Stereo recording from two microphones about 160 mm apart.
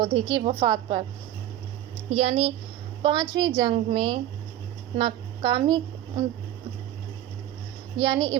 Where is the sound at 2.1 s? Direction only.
40° right (ahead or behind).